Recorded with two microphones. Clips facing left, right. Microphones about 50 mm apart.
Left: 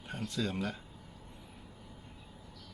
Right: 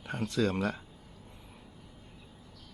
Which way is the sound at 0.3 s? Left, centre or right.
Right.